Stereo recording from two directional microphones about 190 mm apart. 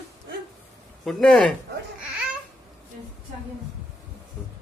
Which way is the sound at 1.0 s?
Centre (ahead or behind).